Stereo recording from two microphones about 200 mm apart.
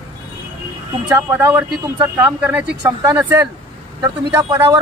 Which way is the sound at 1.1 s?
10° right (ahead or behind).